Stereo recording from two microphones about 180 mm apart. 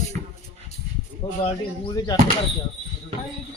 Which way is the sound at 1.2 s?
35° left (ahead or behind).